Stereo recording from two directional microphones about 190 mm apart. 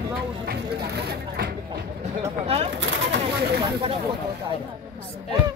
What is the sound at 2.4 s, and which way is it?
Speech, 30° right (ahead or behind).